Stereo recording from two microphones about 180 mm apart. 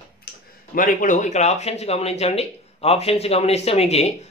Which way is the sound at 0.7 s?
45° left (ahead or behind).